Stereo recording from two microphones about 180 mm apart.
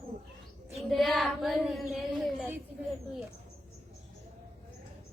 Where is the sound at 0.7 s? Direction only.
Centre (ahead or behind).